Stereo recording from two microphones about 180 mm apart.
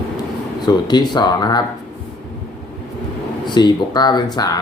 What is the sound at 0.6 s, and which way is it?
Speech, 25° left (ahead or behind).